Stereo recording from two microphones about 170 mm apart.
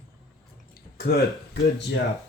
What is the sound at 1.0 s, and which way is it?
Speech, 70° left (ahead or behind).